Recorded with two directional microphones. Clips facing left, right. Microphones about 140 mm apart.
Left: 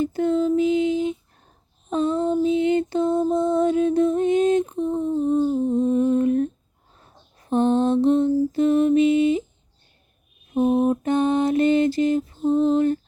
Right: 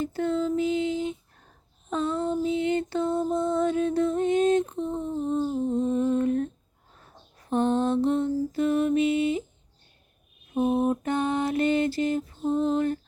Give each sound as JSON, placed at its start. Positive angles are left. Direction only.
{"t": 0.0, "sound": "a sound", "side_deg": 15}
{"t": 1.9, "sound": "lullaby", "side_deg": 20}
{"t": 5.3, "sound": "humming", "side_deg": 10}
{"t": 7.5, "sound": "lullaby", "side_deg": 20}
{"t": 10.5, "sound": "mantra", "side_deg": 20}